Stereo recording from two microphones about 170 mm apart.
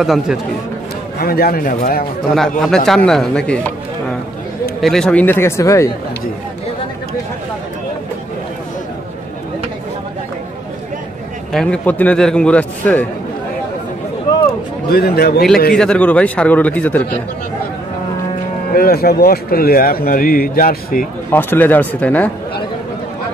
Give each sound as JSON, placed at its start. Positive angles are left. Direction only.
{"t": 0.0, "sound": "speech", "side_deg": 0}
{"t": 1.2, "sound": "speech", "side_deg": 60}
{"t": 2.6, "sound": "speech", "side_deg": 5}
{"t": 4.8, "sound": "a man's voice", "side_deg": 5}
{"t": 11.5, "sound": "a man's voice", "side_deg": 5}
{"t": 14.9, "sound": "speech", "side_deg": 65}
{"t": 15.7, "sound": "a man's voice", "side_deg": 5}
{"t": 18.7, "sound": "speech", "side_deg": 60}
{"t": 21.3, "sound": "a man's voice", "side_deg": 10}